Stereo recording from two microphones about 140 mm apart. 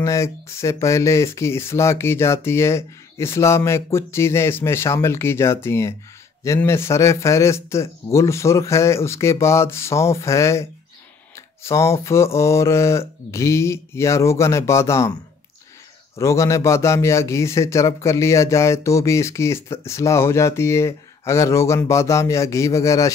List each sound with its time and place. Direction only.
0.0 s a man's voice: 20° left (ahead or behind)
16.2 s a man's voice: 20° left (ahead or behind)